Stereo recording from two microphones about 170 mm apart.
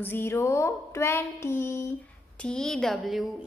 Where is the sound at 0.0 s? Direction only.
15° left (ahead or behind).